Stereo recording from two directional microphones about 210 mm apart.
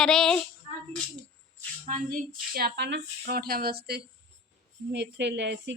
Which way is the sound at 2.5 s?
50° right (ahead or behind).